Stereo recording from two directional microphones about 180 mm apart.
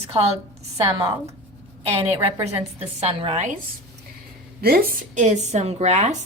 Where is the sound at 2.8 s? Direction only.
35° right (ahead or behind).